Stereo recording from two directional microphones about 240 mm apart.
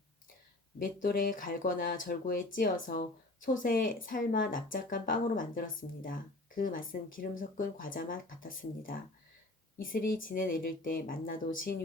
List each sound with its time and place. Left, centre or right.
1.0 s speech: left